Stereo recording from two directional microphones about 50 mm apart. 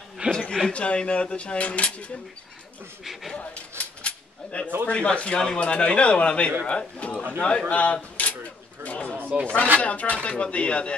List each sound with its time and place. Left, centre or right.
0.3 s a man's voice: centre
3.3 s a sound: left
4.8 s speech: left
9.3 s speech: centre
9.8 s speech: left